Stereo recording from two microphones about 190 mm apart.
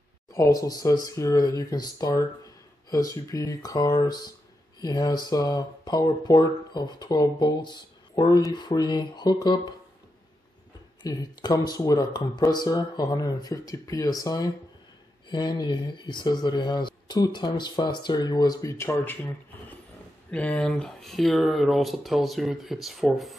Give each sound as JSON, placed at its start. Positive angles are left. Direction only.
{"t": 0.3, "sound": "speech", "side_deg": 20}
{"t": 11.0, "sound": "speech", "side_deg": 20}